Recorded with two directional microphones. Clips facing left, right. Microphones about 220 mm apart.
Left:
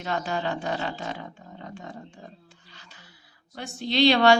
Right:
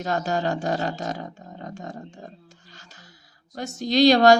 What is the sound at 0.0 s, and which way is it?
Speech, 40° right (ahead or behind).